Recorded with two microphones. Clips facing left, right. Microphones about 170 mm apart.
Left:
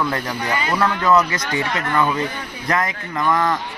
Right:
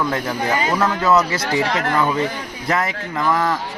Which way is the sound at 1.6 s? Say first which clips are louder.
Right 4 dB; 90° right.